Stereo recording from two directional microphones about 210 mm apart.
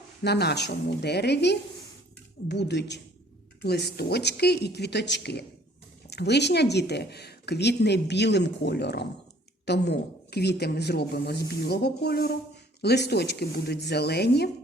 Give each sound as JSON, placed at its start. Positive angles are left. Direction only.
{"t": 0.2, "sound": "a woman's voice", "side_deg": 50}